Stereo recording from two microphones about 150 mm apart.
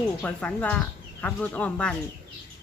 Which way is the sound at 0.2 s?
5° left (ahead or behind).